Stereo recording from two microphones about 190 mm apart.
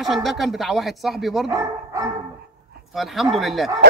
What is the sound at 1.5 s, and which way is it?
Speech, 15° right (ahead or behind).